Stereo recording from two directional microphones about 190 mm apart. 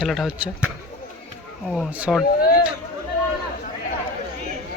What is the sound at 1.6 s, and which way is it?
Speech, centre (ahead or behind).